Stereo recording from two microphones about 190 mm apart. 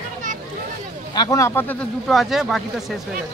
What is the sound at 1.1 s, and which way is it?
Speech, 20° left (ahead or behind).